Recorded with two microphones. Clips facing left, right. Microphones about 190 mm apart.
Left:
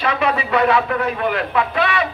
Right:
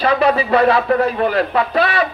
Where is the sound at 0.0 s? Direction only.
35° right (ahead or behind).